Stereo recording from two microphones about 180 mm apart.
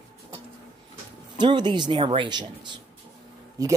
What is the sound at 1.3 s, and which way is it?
Speech, 25° right (ahead or behind).